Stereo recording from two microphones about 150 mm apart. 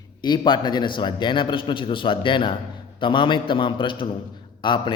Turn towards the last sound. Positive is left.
turn(degrees=30)  # may be behind; listen again after turning